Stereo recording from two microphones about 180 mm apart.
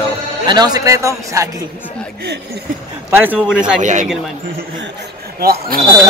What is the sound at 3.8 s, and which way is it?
Speech, 45° right (ahead or behind).